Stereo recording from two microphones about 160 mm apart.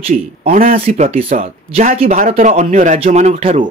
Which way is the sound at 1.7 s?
45° right (ahead or behind).